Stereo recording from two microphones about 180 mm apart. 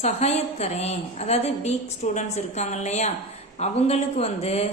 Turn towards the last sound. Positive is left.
turn(degrees=35)  # may be behind; listen again after turning